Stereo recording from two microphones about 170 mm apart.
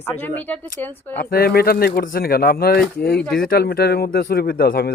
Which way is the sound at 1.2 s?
60° left (ahead or behind).